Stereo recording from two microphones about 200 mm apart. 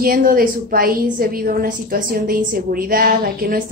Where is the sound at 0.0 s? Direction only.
45° right (ahead or behind).